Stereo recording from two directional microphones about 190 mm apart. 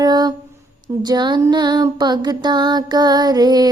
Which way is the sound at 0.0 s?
20° right (ahead or behind).